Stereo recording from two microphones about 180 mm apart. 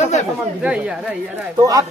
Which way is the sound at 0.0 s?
40° left (ahead or behind).